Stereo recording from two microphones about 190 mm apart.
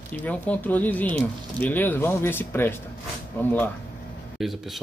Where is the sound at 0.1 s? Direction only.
10° left (ahead or behind).